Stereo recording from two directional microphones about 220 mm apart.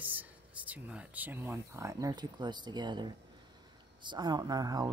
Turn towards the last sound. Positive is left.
turn(degrees=-15)  # may be behind; listen again after turning